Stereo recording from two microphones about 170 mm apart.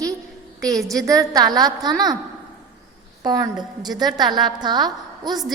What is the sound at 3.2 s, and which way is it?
A woman's voice, 20° right (ahead or behind).